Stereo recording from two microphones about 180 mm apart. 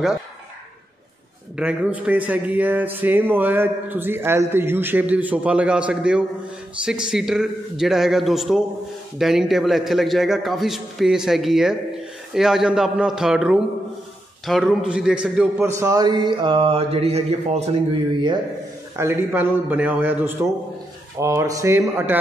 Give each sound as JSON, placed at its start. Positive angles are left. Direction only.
{"t": 1.6, "sound": "a man's voice", "side_deg": -10}
{"t": 15.6, "sound": "speech", "side_deg": -15}
{"t": 18.9, "sound": "a man's voice", "side_deg": -15}